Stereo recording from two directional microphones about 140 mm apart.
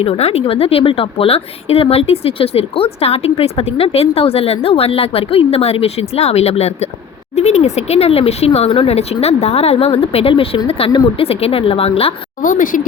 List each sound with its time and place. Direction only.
0.0 s a woman's voice: 45° left (ahead or behind)
12.4 s a woman's voice: 70° left (ahead or behind)